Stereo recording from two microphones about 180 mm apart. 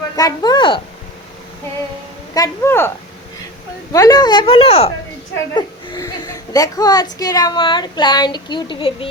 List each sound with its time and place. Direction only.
0.2 s speech: 20° left (ahead or behind)
2.3 s speech: 15° left (ahead or behind)
3.9 s speech: 20° left (ahead or behind)
5.5 s a woman's voice: 20° left (ahead or behind)